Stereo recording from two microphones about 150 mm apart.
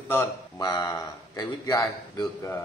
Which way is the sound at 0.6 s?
25° left (ahead or behind).